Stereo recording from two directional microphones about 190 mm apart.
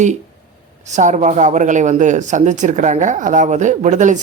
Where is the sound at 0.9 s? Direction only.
40° right (ahead or behind).